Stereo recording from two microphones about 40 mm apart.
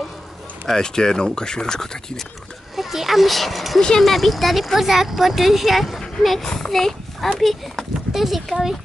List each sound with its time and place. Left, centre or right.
0.7 s speech: centre
2.7 s speech: centre
6.7 s horse: centre
7.3 s speech: centre